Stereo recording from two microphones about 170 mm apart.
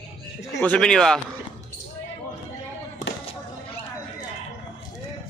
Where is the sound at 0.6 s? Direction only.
5° left (ahead or behind).